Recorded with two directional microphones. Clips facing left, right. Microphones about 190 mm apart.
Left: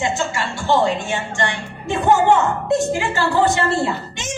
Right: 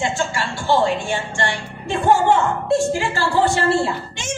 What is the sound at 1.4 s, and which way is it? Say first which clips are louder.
A woman's voice: left 1 dB; 20° left (ahead or behind).